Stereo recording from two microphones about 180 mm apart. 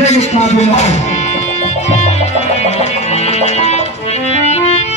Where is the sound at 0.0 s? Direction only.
40° left (ahead or behind).